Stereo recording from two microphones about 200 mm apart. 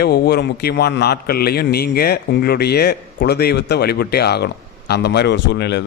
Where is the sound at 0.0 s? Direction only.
55° left (ahead or behind).